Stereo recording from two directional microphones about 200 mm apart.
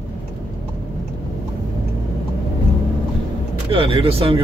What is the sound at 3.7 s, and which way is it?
Speech, 25° right (ahead or behind).